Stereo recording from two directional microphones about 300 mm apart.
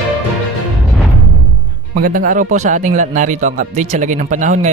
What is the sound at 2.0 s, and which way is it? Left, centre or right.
Speech, right.